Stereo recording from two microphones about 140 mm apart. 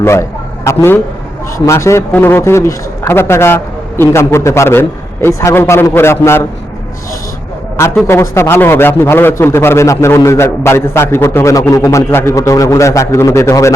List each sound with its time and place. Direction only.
0.0 s a man's voice: 20° left (ahead or behind)
8.0 s a man's voice: 20° left (ahead or behind)